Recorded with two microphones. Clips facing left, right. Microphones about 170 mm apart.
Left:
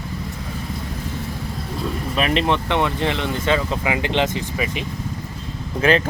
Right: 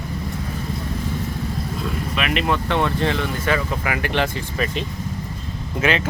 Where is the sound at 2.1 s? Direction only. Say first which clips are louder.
Left 3 dB; 35° left (ahead or behind).